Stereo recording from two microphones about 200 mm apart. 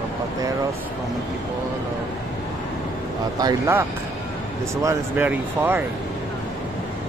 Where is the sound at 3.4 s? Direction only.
15° right (ahead or behind).